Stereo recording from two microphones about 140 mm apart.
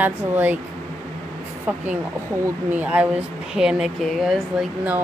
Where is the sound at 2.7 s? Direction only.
10° right (ahead or behind).